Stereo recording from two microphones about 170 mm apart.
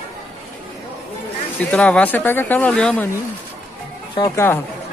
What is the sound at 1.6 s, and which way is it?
Speech, 10° left (ahead or behind).